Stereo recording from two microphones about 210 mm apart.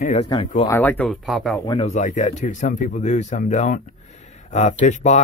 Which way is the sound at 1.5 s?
20° left (ahead or behind).